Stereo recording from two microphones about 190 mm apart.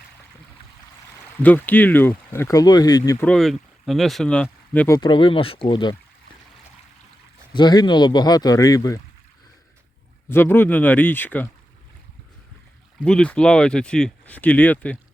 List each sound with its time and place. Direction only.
1.4 s speech: 10° left (ahead or behind)
3.2 s speech: centre (ahead or behind)
4.9 s speech: 25° left (ahead or behind)
7.5 s speech: 20° left (ahead or behind)
10.2 s speech: 10° left (ahead or behind)
13.0 s speech: 5° left (ahead or behind)